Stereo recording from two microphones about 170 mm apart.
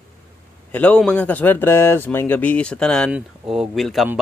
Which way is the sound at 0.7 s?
10° left (ahead or behind).